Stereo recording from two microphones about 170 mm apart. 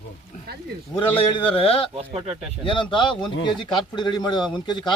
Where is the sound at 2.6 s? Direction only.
30° left (ahead or behind).